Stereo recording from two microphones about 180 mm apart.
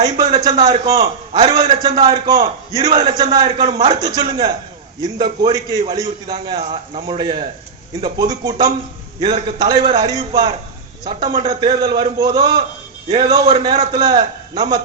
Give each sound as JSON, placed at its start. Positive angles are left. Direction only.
{"t": 0.2, "sound": "a man's voice", "side_deg": -30}
{"t": 3.7, "sound": "a man's voice", "side_deg": -40}
{"t": 4.0, "sound": "a man's voice", "side_deg": -25}
{"t": 6.3, "sound": "a man's voice", "side_deg": -35}